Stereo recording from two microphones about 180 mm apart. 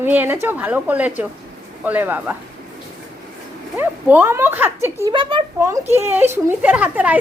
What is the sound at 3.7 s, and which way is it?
A woman's voice, 10° right (ahead or behind).